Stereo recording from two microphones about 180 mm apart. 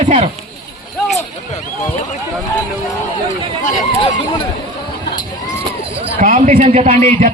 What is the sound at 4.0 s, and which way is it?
Speech, 30° left (ahead or behind).